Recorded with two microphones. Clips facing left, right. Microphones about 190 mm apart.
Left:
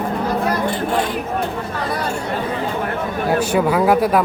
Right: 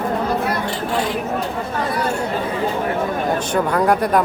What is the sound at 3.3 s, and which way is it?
Speech, 5° left (ahead or behind).